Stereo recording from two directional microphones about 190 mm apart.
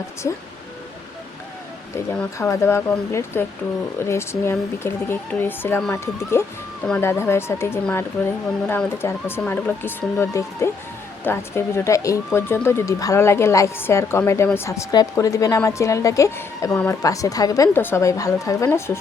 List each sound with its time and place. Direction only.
2.4 s speech: 15° left (ahead or behind)